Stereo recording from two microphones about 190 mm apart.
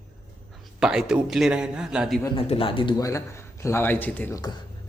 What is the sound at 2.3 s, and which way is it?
A man's voice, 30° left (ahead or behind).